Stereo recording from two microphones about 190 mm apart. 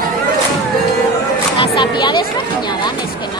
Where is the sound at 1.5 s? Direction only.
25° left (ahead or behind).